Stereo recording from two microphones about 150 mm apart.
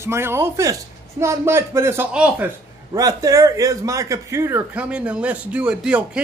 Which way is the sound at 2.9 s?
25° right (ahead or behind).